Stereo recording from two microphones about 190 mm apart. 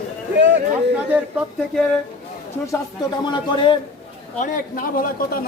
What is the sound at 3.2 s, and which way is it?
Speech, 25° left (ahead or behind).